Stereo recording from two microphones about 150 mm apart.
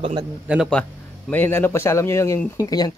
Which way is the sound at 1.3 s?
15° left (ahead or behind).